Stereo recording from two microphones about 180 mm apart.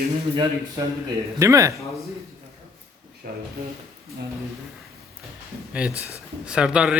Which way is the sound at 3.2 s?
55° right (ahead or behind).